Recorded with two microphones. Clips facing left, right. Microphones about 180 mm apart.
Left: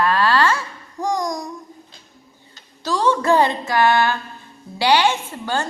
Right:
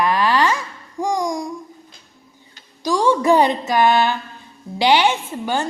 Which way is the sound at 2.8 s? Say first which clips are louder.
Right 2 dB; 15° right (ahead or behind).